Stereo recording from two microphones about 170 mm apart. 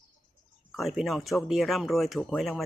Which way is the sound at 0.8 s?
Centre (ahead or behind).